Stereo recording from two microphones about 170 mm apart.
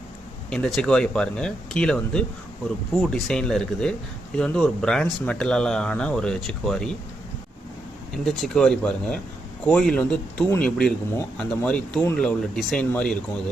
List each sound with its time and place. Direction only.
0.5 s speech: 5° left (ahead or behind)
8.2 s speech: centre (ahead or behind)